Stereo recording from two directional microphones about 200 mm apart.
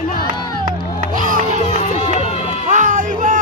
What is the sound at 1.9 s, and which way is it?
Music, 30° left (ahead or behind).